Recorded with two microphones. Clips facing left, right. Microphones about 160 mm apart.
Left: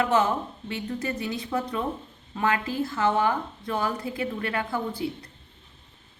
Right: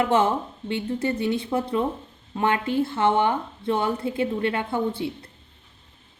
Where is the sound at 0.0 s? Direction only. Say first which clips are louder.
Right 2 dB; 25° right (ahead or behind).